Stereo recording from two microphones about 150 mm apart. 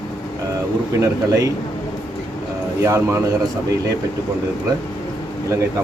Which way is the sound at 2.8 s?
20° right (ahead or behind).